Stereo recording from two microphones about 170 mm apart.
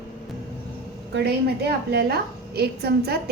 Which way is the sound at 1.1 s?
75° right (ahead or behind).